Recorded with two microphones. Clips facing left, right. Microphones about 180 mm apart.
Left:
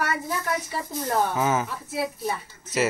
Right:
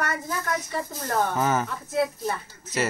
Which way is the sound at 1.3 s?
Centre (ahead or behind).